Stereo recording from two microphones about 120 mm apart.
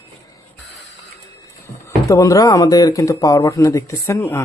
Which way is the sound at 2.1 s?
30° left (ahead or behind).